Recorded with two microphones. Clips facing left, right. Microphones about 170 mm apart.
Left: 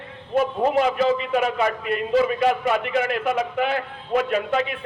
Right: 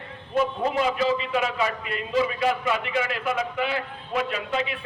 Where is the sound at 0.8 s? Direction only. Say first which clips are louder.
Left 2 dB; 50° left (ahead or behind).